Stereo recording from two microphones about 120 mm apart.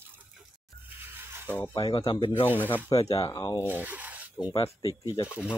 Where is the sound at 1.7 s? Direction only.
45° left (ahead or behind).